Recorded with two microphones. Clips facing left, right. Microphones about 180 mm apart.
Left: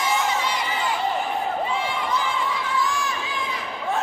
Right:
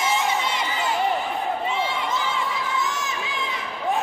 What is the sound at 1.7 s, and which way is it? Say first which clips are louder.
Crowd: even; 25° right (ahead or behind).